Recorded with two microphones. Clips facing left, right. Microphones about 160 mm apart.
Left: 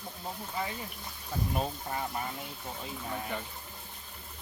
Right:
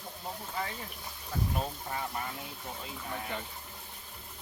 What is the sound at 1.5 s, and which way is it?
Speech, 20° left (ahead or behind).